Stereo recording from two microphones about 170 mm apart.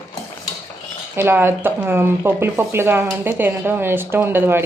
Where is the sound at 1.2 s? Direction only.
15° right (ahead or behind).